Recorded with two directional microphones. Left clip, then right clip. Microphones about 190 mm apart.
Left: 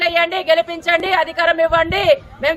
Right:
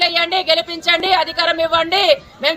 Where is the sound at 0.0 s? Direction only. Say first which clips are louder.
Even; centre (ahead or behind).